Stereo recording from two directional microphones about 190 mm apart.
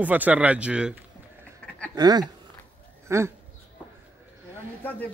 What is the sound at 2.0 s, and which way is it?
Speech, 20° right (ahead or behind).